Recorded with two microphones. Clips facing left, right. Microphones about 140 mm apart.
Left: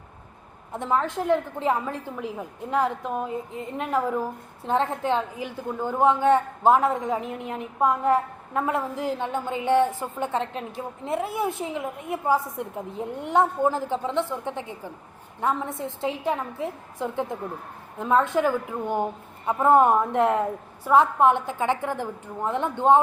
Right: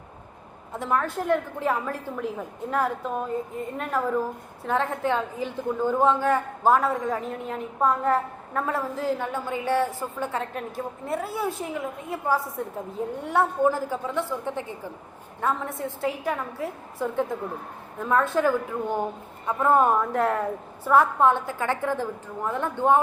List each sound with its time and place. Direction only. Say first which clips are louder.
0.7 s a woman's voice: left 1 dB; 20° left (ahead or behind)
4.6 s a woman's voice: left 1 dB; 25° left (ahead or behind)